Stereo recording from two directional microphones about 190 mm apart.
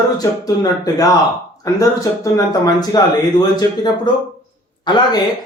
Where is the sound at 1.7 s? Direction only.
20° left (ahead or behind).